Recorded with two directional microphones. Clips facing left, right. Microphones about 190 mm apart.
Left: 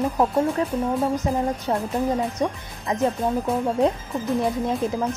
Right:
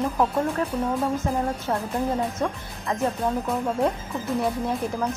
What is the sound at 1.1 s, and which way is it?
Speech, 20° left (ahead or behind).